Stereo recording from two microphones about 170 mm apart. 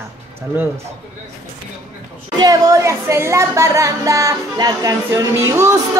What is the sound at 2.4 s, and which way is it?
A man's voice, 20° right (ahead or behind).